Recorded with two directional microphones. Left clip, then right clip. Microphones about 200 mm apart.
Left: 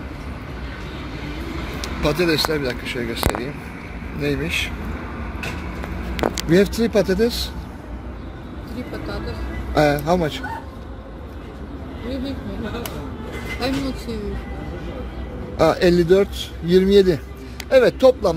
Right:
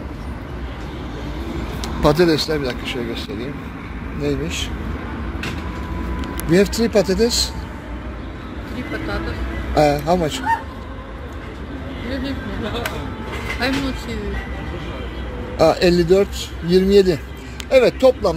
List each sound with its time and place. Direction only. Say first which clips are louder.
1.8 s a sound: right 5 dB; 25° right (ahead or behind)
2.3 s speech: even; centre (ahead or behind)
6.5 s speech: right 2 dB; 5° left (ahead or behind)
9.8 s speech: right 2 dB; 5° left (ahead or behind)
13.6 s speech: right 2 dB; 45° left (ahead or behind)
15.5 s speech: right 1 dB; 10° left (ahead or behind)